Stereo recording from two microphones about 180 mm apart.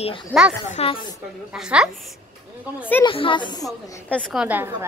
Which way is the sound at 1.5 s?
5° right (ahead or behind).